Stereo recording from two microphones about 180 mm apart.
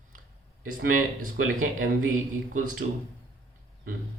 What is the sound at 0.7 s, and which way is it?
Speech, 50° right (ahead or behind).